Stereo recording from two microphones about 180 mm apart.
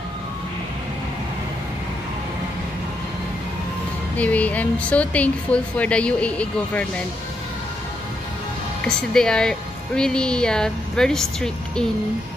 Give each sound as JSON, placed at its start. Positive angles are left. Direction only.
{"t": 4.2, "sound": "speech", "side_deg": 10}
{"t": 8.8, "sound": "speech", "side_deg": 5}